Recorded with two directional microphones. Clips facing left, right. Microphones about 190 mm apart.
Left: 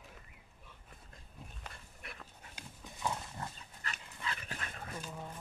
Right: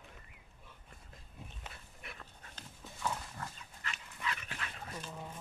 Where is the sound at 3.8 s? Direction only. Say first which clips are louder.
Right 1 dB; 35° left (ahead or behind).